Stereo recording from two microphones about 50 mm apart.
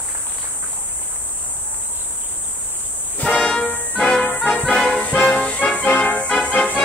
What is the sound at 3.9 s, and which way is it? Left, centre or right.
Music, left.